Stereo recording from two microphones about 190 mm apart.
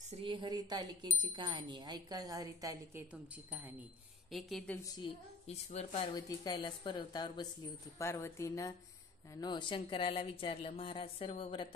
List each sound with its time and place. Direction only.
0.1 s speech: 25° right (ahead or behind)
4.3 s a woman's voice: centre (ahead or behind)
4.8 s speech: 20° left (ahead or behind)
5.5 s speech: 35° left (ahead or behind)
6.1 s speech: 20° left (ahead or behind)